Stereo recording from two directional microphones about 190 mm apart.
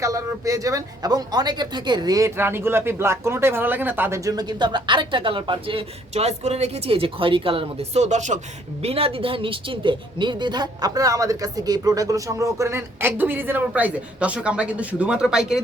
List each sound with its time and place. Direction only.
0.0 s a woman's voice: 15° right (ahead or behind)